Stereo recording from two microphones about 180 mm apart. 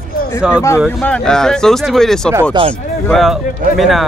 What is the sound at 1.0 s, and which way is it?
Speech, 5° left (ahead or behind).